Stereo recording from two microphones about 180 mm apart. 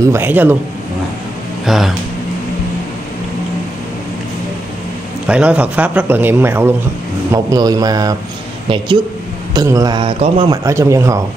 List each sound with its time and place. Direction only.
0.0 s speech: 15° right (ahead or behind)
1.7 s speech: centre (ahead or behind)
5.2 s a man's voice: 5° right (ahead or behind)
9.5 s a man's voice: 20° right (ahead or behind)
10.6 s speech: 15° right (ahead or behind)